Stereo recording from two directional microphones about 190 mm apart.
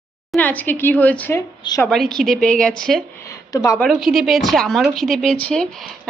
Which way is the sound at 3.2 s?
15° left (ahead or behind).